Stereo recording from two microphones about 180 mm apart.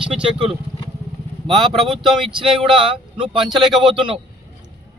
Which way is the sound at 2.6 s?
30° right (ahead or behind).